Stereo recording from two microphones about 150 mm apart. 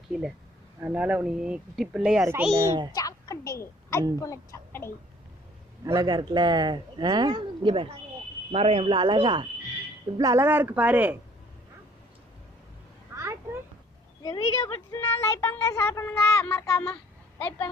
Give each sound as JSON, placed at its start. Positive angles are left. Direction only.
{"t": 0.1, "sound": "speech", "side_deg": -5}
{"t": 2.2, "sound": "speech", "side_deg": -15}
{"t": 2.5, "sound": "speech", "side_deg": -25}
{"t": 2.9, "sound": "a woman's voice", "side_deg": 25}
{"t": 5.8, "sound": "speech", "side_deg": -25}
{"t": 10.4, "sound": "speech", "side_deg": -15}
{"t": 13.1, "sound": "a sound", "side_deg": -20}
{"t": 14.2, "sound": "speech", "side_deg": 25}
{"t": 16.9, "sound": "a sound", "side_deg": 15}